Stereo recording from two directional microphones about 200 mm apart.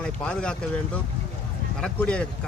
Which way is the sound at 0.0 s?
5° left (ahead or behind).